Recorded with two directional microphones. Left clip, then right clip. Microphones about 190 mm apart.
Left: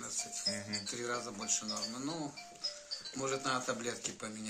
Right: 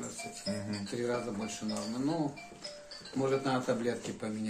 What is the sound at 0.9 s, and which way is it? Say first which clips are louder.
Speech: right 8 dB; 10° right (ahead or behind).